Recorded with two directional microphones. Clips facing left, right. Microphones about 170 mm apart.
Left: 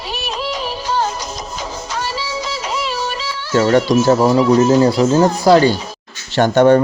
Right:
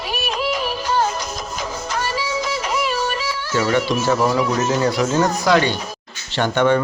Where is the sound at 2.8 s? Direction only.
50° right (ahead or behind).